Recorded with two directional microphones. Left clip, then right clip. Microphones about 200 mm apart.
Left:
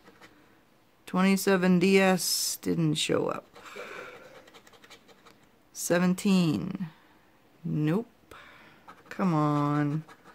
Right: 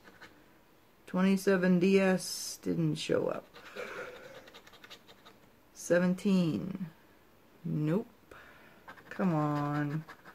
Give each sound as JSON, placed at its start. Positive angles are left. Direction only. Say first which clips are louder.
{"t": 1.0, "sound": "speech", "louder": "left 4 dB", "side_deg": 50}
{"t": 5.7, "sound": "speech", "louder": "left 2 dB", "side_deg": 50}
{"t": 7.7, "sound": "a sound", "louder": "left 4 dB", "side_deg": 45}
{"t": 9.1, "sound": "speech", "louder": "left 5 dB", "side_deg": 45}